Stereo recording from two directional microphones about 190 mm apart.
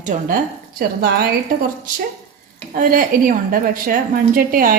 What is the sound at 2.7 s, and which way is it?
A woman's voice, 45° right (ahead or behind).